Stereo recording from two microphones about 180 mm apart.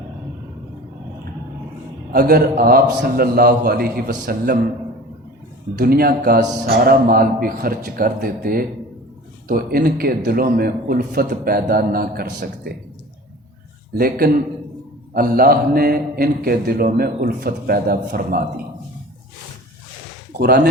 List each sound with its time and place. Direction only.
2.1 s a man's voice: 55° right (ahead or behind)
5.7 s a man's voice: 55° right (ahead or behind)
13.9 s a man's voice: 55° right (ahead or behind)